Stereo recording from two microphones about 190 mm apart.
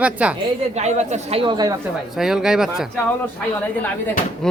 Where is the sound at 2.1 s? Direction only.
5° right (ahead or behind).